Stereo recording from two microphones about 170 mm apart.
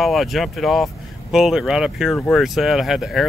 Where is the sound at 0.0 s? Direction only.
Centre (ahead or behind).